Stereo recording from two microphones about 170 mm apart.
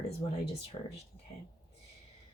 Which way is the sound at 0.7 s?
35° left (ahead or behind).